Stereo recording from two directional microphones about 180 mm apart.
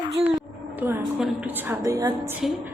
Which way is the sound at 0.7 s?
10° right (ahead or behind).